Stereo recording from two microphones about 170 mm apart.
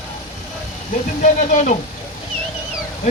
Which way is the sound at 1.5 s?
45° left (ahead or behind).